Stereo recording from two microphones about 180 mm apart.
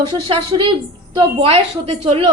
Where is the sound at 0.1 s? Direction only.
30° right (ahead or behind).